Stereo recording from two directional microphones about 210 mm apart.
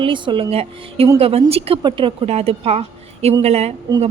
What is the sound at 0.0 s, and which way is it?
A woman's voice, 25° right (ahead or behind).